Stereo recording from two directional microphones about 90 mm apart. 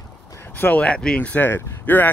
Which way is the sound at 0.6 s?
15° left (ahead or behind).